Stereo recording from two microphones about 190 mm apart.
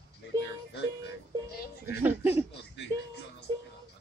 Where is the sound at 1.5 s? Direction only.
55° left (ahead or behind).